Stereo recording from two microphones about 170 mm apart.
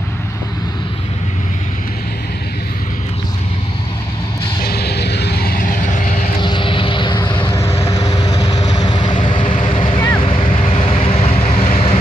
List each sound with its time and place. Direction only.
4.6 s vehicle: 70° left (ahead or behind); by 6.1 s 50° left (ahead or behind)
6.4 s vehicle: 30° left (ahead or behind)